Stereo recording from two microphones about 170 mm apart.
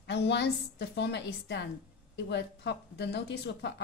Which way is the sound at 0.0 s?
90° left.